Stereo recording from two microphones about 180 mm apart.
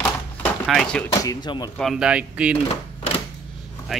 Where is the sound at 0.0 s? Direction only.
5° left (ahead or behind).